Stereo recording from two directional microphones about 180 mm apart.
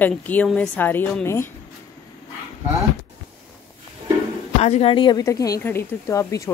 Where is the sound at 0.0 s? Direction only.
10° left (ahead or behind).